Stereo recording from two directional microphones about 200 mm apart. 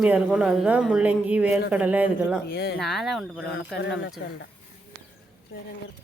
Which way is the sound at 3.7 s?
60° left (ahead or behind).